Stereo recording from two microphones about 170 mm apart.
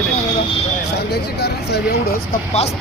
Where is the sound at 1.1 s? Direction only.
75° left (ahead or behind).